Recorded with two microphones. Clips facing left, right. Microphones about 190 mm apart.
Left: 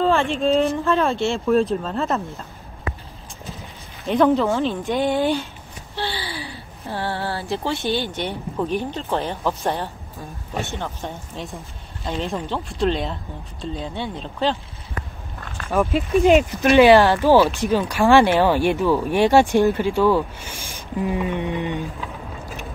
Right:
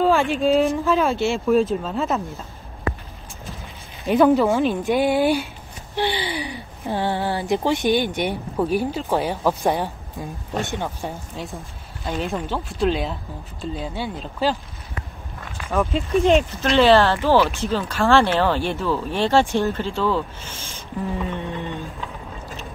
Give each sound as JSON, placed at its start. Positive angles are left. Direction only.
{"t": 0.0, "sound": "speech", "side_deg": -5}
{"t": 4.0, "sound": "speech", "side_deg": -10}
{"t": 15.7, "sound": "speech", "side_deg": 15}